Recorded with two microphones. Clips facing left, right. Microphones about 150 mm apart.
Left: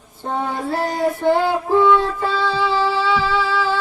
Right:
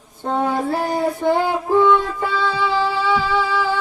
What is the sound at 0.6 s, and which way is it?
Female singing, 10° right (ahead or behind).